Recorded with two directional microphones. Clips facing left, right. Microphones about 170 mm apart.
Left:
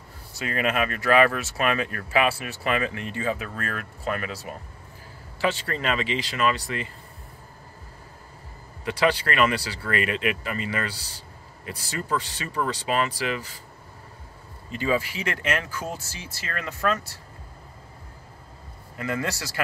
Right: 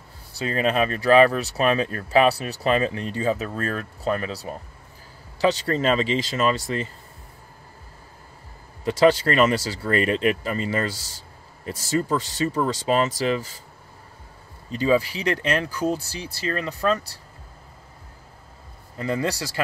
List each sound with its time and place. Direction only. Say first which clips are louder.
0.4 s speech: right 3 dB; 30° right (ahead or behind)
8.8 s speech: right 6 dB; 35° right (ahead or behind)
14.7 s speech: right 5 dB; 35° right (ahead or behind)
18.9 s speech: right 4 dB; 30° right (ahead or behind)